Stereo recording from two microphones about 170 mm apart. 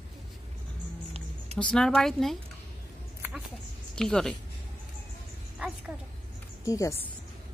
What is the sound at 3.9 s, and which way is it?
Speech, 5° left (ahead or behind).